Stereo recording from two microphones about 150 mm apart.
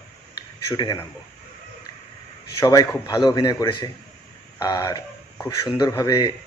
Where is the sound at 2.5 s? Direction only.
25° left (ahead or behind).